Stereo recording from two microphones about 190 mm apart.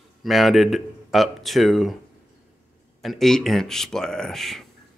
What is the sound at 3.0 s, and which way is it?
Speech, centre (ahead or behind).